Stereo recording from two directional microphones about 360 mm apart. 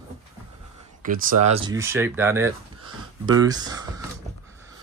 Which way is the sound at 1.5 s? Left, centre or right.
Centre.